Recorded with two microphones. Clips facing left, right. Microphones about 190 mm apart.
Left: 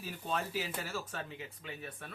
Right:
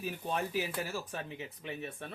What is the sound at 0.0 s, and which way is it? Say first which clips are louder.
Speech: right 2 dB; 15° right (ahead or behind).